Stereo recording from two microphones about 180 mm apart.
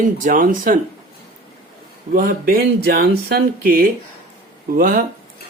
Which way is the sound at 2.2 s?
50° right (ahead or behind).